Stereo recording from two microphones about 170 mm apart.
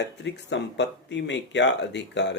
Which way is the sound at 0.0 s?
90° left.